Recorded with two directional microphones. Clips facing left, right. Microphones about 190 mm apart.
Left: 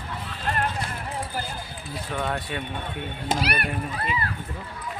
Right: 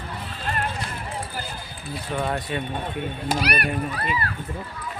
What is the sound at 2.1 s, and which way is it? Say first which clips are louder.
Speech: right 2 dB; 10° right (ahead or behind).